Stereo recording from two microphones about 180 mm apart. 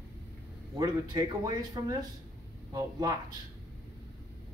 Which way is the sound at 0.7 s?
20° right (ahead or behind).